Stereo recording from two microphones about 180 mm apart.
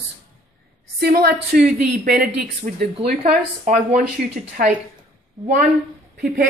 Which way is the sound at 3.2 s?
40° right (ahead or behind).